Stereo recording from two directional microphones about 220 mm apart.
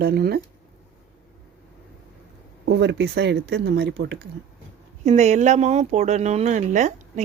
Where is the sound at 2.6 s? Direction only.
55° right (ahead or behind).